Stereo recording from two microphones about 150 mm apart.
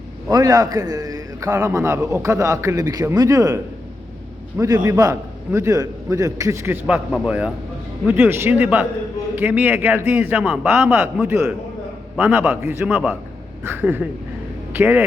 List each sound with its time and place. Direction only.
0.3 s a man's voice: 25° right (ahead or behind)
6.8 s a man's voice: 5° right (ahead or behind)